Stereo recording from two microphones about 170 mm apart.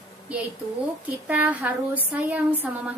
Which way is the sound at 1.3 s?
10° right (ahead or behind).